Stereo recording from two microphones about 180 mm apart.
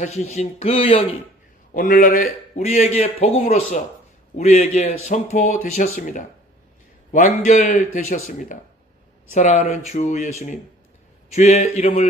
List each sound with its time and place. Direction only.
0.0 s a man's voice: 40° left (ahead or behind)
1.7 s a man's voice: 45° left (ahead or behind)
11.3 s a man's voice: 40° left (ahead or behind)